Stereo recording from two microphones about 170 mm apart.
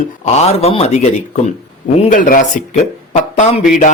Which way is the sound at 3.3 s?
40° left (ahead or behind).